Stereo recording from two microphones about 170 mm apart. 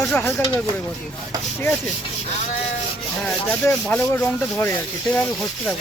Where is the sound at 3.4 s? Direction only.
10° left (ahead or behind).